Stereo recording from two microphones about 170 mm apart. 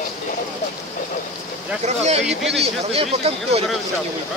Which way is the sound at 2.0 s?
40° right (ahead or behind).